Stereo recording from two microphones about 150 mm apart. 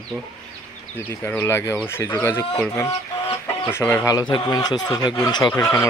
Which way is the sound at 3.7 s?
15° left (ahead or behind).